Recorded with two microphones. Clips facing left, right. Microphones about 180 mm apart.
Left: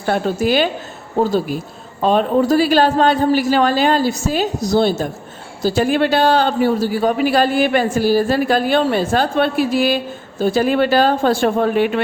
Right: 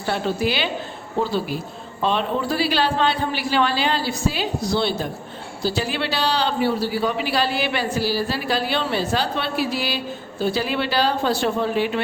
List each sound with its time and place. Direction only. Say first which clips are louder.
0.0 s a man's voice: left 5 dB; 45° left (ahead or behind)